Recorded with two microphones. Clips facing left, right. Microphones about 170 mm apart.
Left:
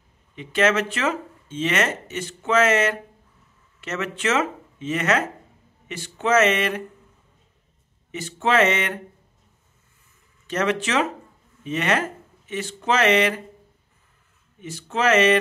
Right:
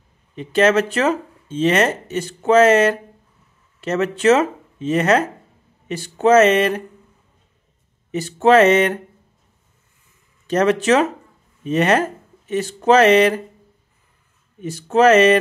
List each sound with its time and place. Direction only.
0.4 s speech: 35° right (ahead or behind)
8.1 s speech: 40° right (ahead or behind)
10.4 s speech: 40° right (ahead or behind)
14.6 s speech: 40° right (ahead or behind)